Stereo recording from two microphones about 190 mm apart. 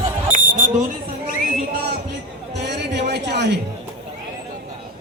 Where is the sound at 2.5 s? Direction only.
65° right (ahead or behind).